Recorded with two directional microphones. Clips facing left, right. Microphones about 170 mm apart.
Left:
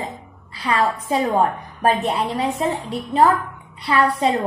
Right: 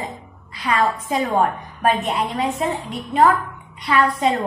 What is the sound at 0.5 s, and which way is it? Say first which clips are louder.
Speech: even; 35° left (ahead or behind).